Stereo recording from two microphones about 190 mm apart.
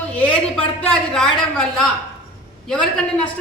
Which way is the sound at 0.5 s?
5° left (ahead or behind).